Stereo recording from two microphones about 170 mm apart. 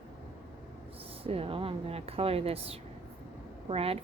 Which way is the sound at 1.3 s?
35° right (ahead or behind).